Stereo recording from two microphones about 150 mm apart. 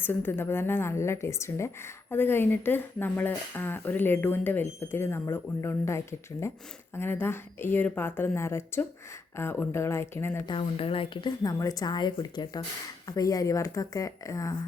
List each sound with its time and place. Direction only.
0.0 s a woman's voice: 15° left (ahead or behind)
10.4 s a woman's voice: 35° left (ahead or behind)